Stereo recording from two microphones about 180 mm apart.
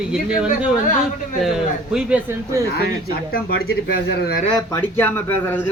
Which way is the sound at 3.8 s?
65° left (ahead or behind).